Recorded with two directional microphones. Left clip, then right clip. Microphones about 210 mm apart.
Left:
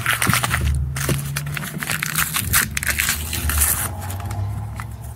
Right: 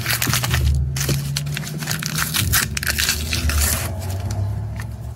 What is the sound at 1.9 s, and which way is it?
Crumpling, 25° right (ahead or behind).